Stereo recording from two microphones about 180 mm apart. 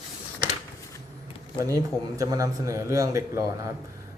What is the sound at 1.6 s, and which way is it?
Speech, 20° right (ahead or behind).